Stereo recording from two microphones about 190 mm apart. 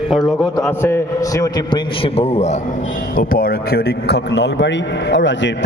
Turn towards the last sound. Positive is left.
turn(degrees=70)  # may be behind; listen again after turning